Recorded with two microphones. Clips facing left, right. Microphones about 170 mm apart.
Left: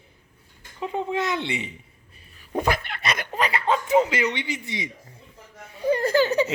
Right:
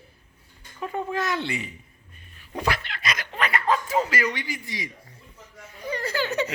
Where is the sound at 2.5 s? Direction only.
50° left (ahead or behind); by 4.9 s 20° left (ahead or behind).